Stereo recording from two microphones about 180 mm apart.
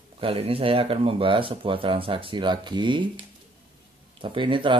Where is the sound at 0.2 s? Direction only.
30° right (ahead or behind).